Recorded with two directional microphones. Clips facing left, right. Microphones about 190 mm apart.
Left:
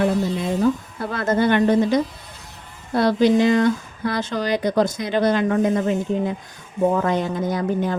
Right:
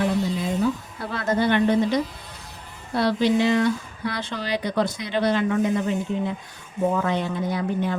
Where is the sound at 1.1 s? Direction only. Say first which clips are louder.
Left 3 dB; 50° left (ahead or behind).